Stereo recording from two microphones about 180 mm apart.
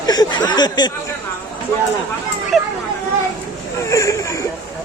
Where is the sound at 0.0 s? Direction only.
20° left (ahead or behind).